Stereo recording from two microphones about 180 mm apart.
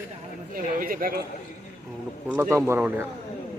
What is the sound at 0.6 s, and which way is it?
Speech, 50° right (ahead or behind).